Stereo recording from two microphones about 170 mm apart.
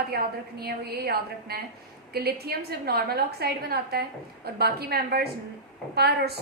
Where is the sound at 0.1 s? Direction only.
65° right (ahead or behind).